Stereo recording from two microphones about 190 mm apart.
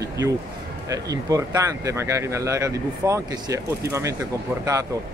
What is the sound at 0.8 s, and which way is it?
Speech, 20° right (ahead or behind).